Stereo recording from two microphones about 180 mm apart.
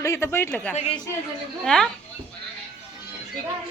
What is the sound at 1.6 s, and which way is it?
Speech, 5° left (ahead or behind).